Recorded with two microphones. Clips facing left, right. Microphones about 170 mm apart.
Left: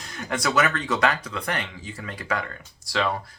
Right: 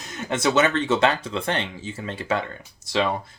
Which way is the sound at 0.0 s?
20° right (ahead or behind).